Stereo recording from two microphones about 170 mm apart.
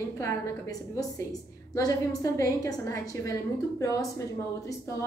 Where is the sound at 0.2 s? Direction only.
20° left (ahead or behind).